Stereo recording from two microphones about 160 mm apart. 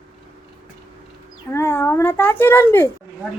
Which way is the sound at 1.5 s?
15° left (ahead or behind).